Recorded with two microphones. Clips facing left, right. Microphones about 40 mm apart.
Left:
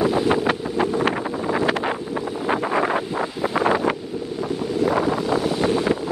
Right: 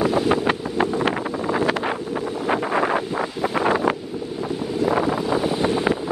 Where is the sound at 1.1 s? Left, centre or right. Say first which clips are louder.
Even; centre.